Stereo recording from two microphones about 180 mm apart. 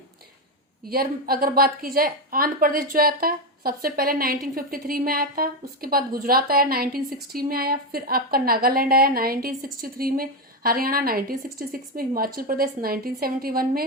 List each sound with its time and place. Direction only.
0.9 s speech: 55° right (ahead or behind)